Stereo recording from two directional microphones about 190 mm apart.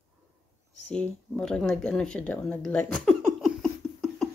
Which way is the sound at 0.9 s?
5° left (ahead or behind).